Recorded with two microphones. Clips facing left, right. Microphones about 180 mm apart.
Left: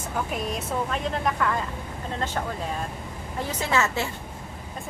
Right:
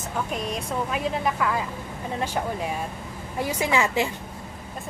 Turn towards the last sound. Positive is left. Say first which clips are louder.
# right 2 dB
turn(degrees=-15)  # may be behind; listen again after turning